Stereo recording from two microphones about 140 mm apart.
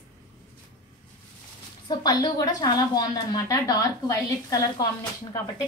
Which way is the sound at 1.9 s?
25° left (ahead or behind).